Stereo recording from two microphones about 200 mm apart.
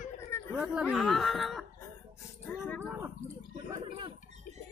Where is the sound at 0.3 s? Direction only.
10° left (ahead or behind).